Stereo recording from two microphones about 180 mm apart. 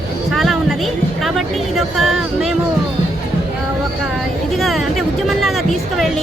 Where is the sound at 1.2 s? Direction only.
Centre (ahead or behind).